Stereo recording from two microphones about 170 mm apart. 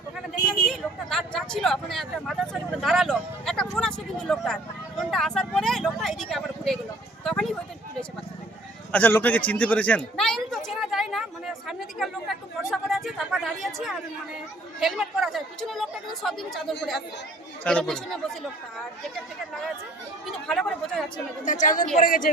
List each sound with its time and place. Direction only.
0.7 s speech: centre (ahead or behind)
7.3 s a sound: 5° left (ahead or behind)
8.9 s a sound: 10° left (ahead or behind)
14.8 s speech: centre (ahead or behind)
20.2 s chatter: centre (ahead or behind)
21.4 s a woman's voice: 50° left (ahead or behind)